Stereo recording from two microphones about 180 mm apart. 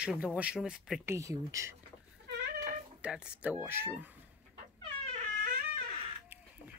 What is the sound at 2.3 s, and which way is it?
Cat, 60° right (ahead or behind).